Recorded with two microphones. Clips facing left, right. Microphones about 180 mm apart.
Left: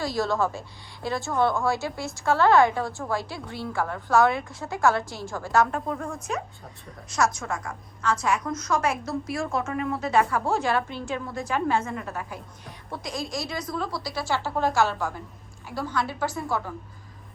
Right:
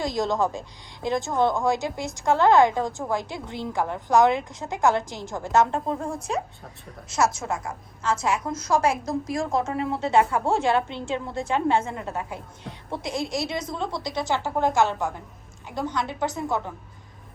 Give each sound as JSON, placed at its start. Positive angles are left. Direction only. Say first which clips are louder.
{"t": 0.0, "sound": "a woman's voice", "louder": "right 1 dB", "side_deg": -20}